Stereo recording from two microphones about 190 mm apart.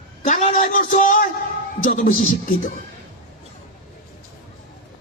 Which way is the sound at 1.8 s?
40° left (ahead or behind).